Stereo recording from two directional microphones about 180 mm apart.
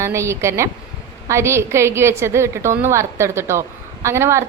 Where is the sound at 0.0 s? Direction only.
15° right (ahead or behind).